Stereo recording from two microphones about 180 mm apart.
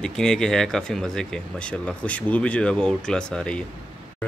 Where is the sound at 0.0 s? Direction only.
5° left (ahead or behind).